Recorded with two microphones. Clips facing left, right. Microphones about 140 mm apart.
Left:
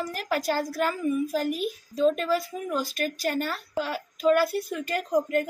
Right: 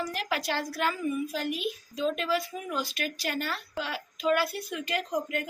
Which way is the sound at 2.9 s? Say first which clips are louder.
Left 5 dB; 45° left (ahead or behind).